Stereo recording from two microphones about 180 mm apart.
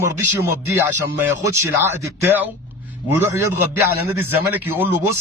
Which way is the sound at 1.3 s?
15° right (ahead or behind).